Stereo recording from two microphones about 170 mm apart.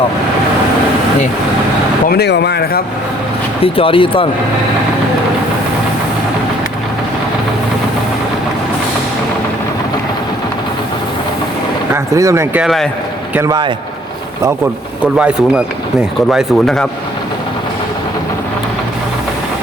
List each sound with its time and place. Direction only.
2.0 s speech: 75° left (ahead or behind)
3.6 s speech: 30° left (ahead or behind)
12.1 s speech: 15° right (ahead or behind)
12.6 s speech: centre (ahead or behind)
13.3 s speech: 20° right (ahead or behind)
15.2 s speech: 5° right (ahead or behind)